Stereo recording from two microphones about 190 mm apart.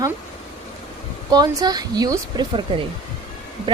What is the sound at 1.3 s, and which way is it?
A woman's voice, 20° right (ahead or behind).